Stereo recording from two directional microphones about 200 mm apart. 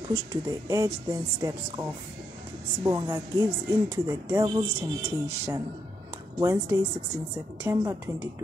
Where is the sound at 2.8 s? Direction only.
15° right (ahead or behind).